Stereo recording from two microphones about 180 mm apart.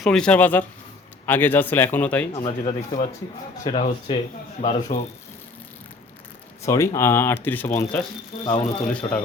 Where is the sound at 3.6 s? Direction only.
30° left (ahead or behind).